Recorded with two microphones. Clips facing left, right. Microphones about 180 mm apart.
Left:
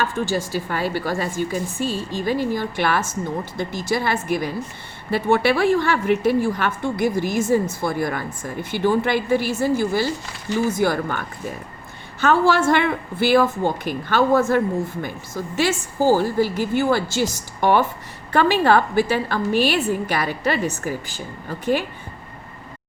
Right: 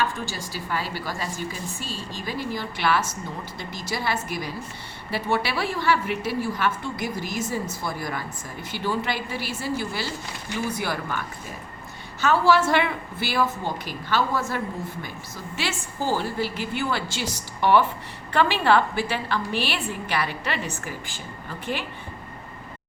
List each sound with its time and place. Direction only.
0.0 s a woman's voice: 50° left (ahead or behind)
12.2 s a woman's voice: 50° left (ahead or behind)